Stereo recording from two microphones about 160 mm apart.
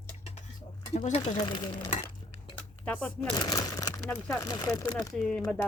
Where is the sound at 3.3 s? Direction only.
25° left (ahead or behind).